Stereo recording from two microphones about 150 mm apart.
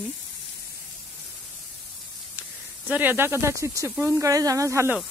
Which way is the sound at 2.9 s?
15° right (ahead or behind).